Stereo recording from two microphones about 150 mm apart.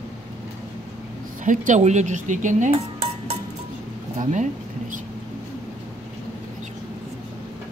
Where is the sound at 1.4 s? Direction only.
55° right (ahead or behind).